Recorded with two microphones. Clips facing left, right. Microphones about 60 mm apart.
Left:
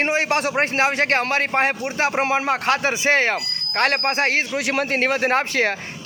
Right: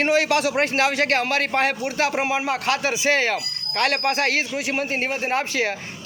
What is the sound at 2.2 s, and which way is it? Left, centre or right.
A man's voice, left.